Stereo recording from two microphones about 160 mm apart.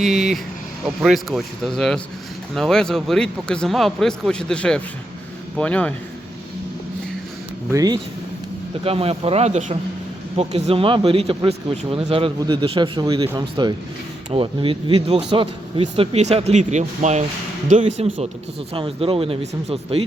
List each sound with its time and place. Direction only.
0.0 s a man's voice: centre (ahead or behind)
7.7 s speech: 20° right (ahead or behind)
8.8 s speech: 35° right (ahead or behind)